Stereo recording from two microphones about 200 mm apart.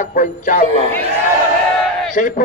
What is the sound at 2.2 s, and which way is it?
Speech, 40° left (ahead or behind).